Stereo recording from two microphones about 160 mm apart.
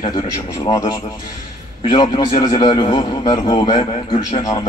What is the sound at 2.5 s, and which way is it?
Speech, 25° left (ahead or behind).